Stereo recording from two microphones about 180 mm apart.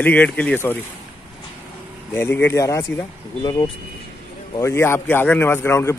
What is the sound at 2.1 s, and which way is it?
Speech, 15° left (ahead or behind).